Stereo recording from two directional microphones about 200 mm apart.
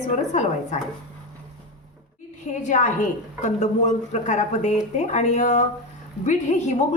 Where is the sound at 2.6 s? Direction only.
40° left (ahead or behind).